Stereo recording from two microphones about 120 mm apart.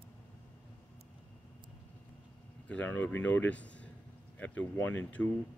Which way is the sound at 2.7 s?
15° left (ahead or behind).